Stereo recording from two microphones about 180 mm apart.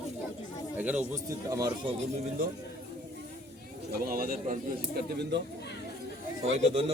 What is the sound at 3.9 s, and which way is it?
Speech, 55° right (ahead or behind).